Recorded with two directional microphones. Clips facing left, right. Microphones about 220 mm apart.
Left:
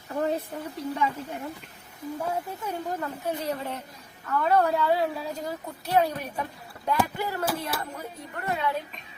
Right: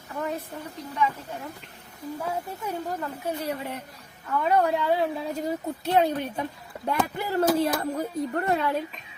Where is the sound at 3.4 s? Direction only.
15° right (ahead or behind).